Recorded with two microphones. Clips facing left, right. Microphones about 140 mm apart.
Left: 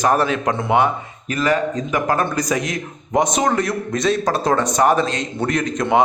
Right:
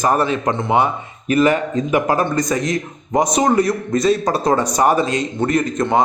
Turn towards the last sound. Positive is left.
turn(degrees=-5)  # may be behind; listen again after turning